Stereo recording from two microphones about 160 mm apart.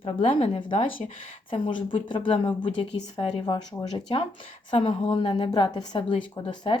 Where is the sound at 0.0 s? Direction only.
40° left (ahead or behind).